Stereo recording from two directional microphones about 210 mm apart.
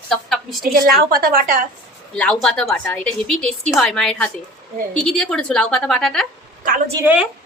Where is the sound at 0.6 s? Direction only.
45° right (ahead or behind).